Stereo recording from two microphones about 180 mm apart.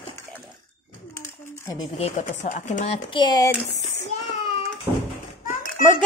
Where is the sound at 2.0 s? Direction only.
40° left (ahead or behind).